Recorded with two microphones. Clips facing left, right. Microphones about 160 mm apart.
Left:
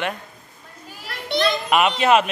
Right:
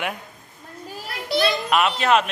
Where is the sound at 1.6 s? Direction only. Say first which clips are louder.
Left 5 dB; 5° left (ahead or behind).